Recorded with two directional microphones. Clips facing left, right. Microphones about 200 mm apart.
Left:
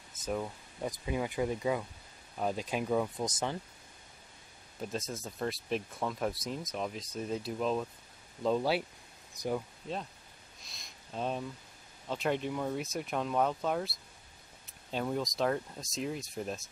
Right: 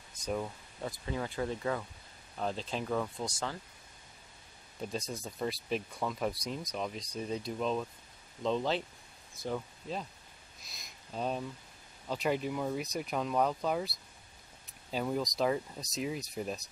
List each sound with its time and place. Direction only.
0.1 s speech: 5° left (ahead or behind)
0.7 s speech: 15° left (ahead or behind)
4.8 s speech: centre (ahead or behind)
10.6 s a sound: centre (ahead or behind)
12.1 s speech: centre (ahead or behind)